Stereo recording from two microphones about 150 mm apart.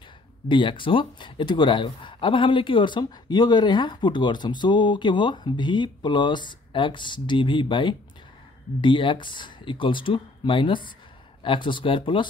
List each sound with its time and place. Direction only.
0.5 s speech: 35° left (ahead or behind)